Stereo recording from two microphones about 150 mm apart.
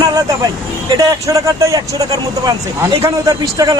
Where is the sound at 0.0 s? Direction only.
25° right (ahead or behind).